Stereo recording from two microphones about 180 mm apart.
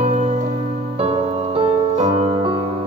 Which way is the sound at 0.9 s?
30° right (ahead or behind).